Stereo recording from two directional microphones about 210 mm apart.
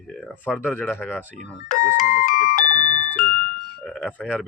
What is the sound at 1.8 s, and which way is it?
Music, 40° left (ahead or behind).